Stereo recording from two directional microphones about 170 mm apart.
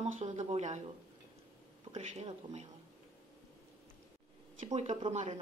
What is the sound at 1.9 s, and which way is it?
Speech, 40° right (ahead or behind).